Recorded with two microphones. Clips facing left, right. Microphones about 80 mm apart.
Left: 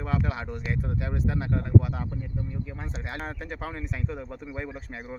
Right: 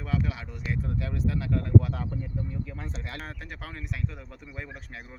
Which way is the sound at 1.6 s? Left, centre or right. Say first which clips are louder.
Right 1 dB; centre.